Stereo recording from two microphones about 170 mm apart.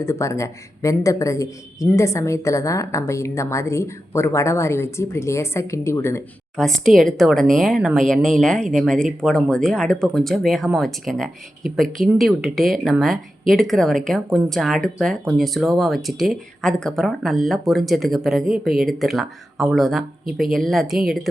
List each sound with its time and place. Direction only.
0.0 s speech: 15° left (ahead or behind)
6.6 s speech: centre (ahead or behind)